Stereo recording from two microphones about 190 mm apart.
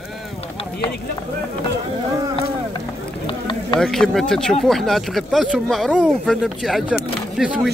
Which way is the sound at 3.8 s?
Centre (ahead or behind).